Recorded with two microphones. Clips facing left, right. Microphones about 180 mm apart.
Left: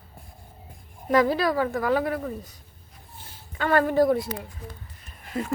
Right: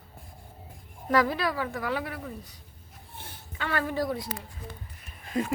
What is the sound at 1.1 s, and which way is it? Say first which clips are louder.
Speech: left 4 dB; 25° left (ahead or behind).